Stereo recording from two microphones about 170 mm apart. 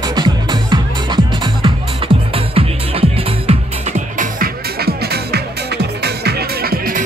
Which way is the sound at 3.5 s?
45° right (ahead or behind).